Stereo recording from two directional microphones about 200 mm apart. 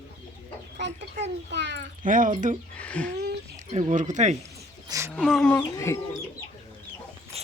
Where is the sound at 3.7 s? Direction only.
35° right (ahead or behind).